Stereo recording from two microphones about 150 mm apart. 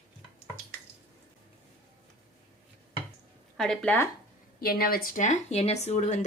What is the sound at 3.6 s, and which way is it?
Speech, 5° left (ahead or behind).